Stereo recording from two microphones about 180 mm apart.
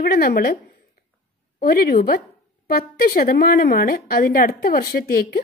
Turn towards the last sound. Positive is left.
turn(degrees=55)  # may be behind; listen again after turning